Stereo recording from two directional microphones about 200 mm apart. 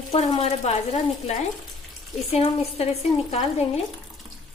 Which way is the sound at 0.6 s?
30° left (ahead or behind).